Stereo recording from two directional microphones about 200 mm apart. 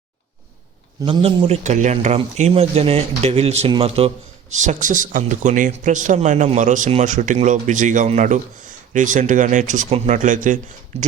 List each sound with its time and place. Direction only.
1.0 s speech: 25° right (ahead or behind)